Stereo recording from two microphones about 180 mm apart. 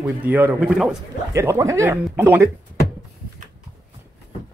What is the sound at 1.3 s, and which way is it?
Speech, 15° right (ahead or behind).